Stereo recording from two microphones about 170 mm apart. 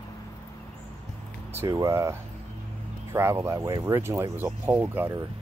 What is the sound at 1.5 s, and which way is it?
Speech, 20° right (ahead or behind).